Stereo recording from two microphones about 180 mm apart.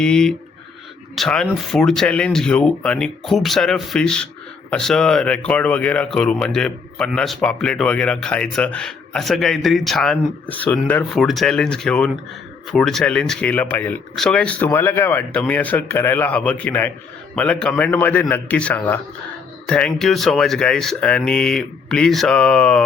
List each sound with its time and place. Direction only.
0.0 s speech: 5° left (ahead or behind)